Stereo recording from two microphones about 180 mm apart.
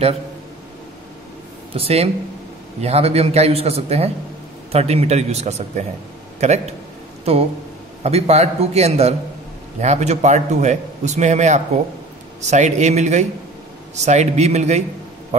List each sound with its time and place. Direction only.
1.7 s a man's voice: 35° right (ahead or behind)